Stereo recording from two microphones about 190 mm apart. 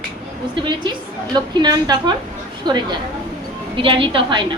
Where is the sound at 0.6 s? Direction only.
25° right (ahead or behind).